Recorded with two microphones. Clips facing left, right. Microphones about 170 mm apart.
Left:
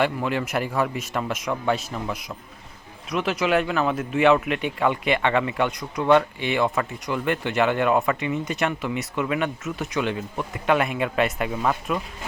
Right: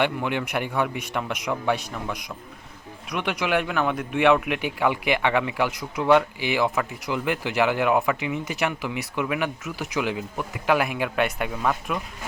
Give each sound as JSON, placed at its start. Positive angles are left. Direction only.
{"t": 0.0, "sound": "speech", "side_deg": 0}